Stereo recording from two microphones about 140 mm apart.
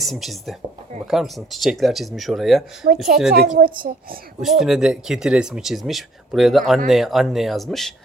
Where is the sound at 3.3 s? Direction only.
90° right.